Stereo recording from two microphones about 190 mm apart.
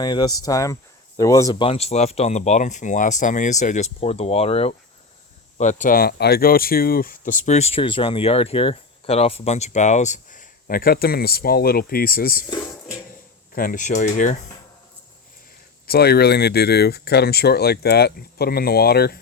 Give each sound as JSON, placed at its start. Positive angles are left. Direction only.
{"t": 0.0, "sound": "speech", "side_deg": 20}
{"t": 13.5, "sound": "speech", "side_deg": 50}
{"t": 15.9, "sound": "speech", "side_deg": 55}